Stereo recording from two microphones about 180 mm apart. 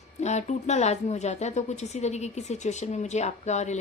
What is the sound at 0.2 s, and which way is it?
A woman's voice, 40° left (ahead or behind).